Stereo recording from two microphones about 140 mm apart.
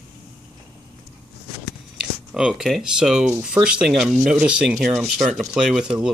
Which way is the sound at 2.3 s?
5° right (ahead or behind).